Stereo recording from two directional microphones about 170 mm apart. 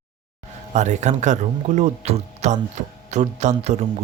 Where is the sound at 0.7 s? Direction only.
45° right (ahead or behind).